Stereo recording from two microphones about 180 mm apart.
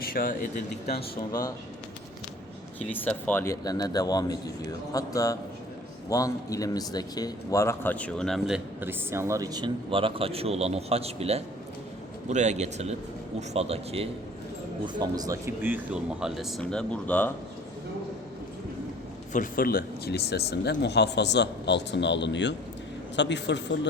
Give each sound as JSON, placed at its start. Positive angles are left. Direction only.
{"t": 0.0, "sound": "speech", "side_deg": 55}
{"t": 1.3, "sound": "speech", "side_deg": 20}
{"t": 2.9, "sound": "a man's voice", "side_deg": 10}
{"t": 14.9, "sound": "speech", "side_deg": -20}
{"t": 19.3, "sound": "speech", "side_deg": 50}